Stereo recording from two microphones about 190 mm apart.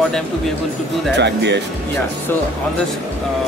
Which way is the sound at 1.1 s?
65° right (ahead or behind).